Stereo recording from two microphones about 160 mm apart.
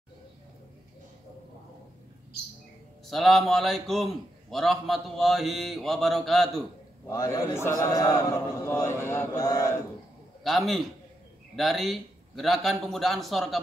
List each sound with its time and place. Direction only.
3.1 s a man's voice: centre (ahead or behind)
7.1 s a man's voice: 20° left (ahead or behind)
10.4 s a man's voice: centre (ahead or behind)